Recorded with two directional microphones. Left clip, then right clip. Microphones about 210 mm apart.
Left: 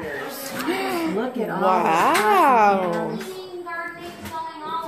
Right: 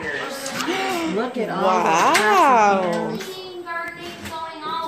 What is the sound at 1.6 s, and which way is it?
Speech, centre (ahead or behind).